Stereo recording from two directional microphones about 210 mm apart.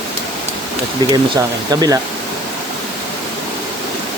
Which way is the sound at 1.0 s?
20° right (ahead or behind).